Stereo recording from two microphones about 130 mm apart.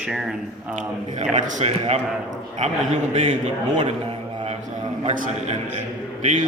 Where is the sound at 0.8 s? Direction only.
70° right (ahead or behind).